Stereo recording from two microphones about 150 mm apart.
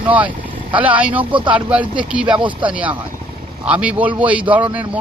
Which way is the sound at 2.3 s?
30° right (ahead or behind).